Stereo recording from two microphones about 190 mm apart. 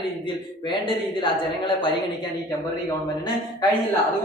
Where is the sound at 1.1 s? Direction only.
25° left (ahead or behind).